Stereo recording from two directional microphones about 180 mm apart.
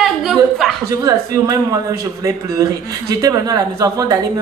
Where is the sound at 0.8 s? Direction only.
20° right (ahead or behind).